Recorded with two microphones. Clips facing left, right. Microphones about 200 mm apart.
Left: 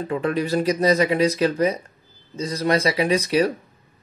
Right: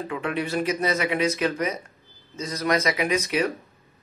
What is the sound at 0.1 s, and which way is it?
Speech, 35° left (ahead or behind).